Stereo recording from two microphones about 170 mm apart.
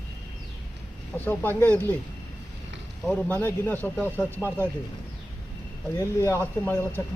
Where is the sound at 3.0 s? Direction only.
10° left (ahead or behind).